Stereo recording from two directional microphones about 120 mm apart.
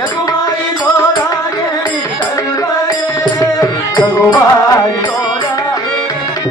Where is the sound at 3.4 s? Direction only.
30° left (ahead or behind).